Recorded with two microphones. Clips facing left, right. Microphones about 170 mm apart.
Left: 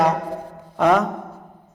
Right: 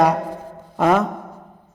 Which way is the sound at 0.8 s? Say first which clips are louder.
Even; 5° right (ahead or behind).